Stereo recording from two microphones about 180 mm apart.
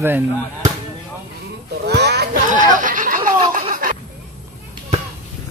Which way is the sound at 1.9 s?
65° right (ahead or behind).